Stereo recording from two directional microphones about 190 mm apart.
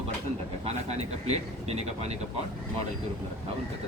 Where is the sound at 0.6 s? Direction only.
35° right (ahead or behind).